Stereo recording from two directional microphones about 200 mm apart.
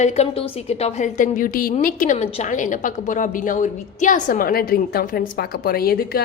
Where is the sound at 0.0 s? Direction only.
35° left (ahead or behind).